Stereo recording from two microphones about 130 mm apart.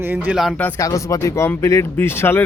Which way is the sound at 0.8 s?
25° left (ahead or behind).